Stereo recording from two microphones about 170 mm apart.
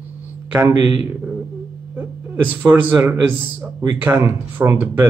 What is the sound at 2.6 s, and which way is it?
Speech, 10° right (ahead or behind).